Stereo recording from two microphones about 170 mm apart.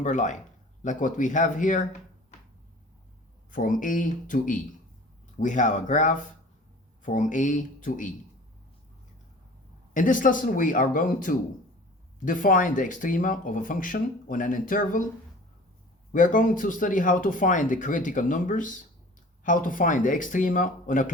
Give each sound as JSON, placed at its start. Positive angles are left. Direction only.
{"t": 0.0, "sound": "speech", "side_deg": 45}
{"t": 3.5, "sound": "speech", "side_deg": 50}
{"t": 9.9, "sound": "speech", "side_deg": 50}
{"t": 16.1, "sound": "speech", "side_deg": 50}